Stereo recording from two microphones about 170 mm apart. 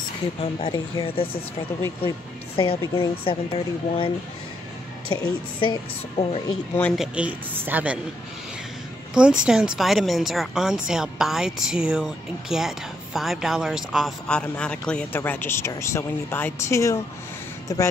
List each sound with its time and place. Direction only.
0.4 s speech: 30° left (ahead or behind)
2.5 s speech: 30° left (ahead or behind)
5.2 s speech: 30° left (ahead or behind)
7.0 s a woman's voice: 5° right (ahead or behind)
9.1 s speech: 5° right (ahead or behind); by 17.8 s 20° left (ahead or behind)